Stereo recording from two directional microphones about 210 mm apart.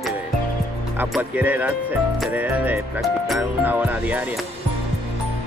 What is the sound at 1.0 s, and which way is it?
Speech, 10° right (ahead or behind).